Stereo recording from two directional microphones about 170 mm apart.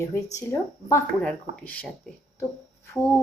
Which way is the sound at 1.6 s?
10° left (ahead or behind).